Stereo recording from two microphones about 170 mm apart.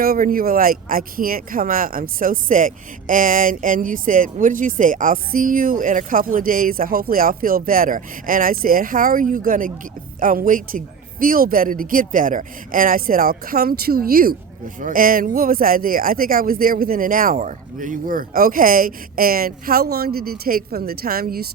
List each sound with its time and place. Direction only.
0.0 s speech: 60° right (ahead or behind)